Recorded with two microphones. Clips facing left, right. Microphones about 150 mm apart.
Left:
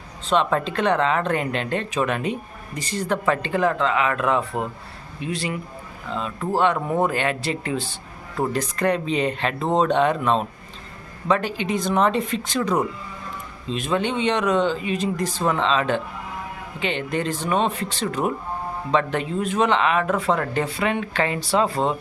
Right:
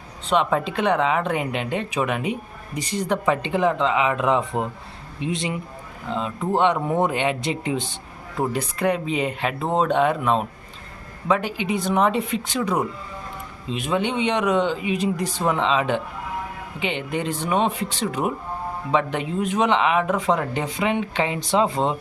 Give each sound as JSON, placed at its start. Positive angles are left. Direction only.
{"t": 0.3, "sound": "speech", "side_deg": -10}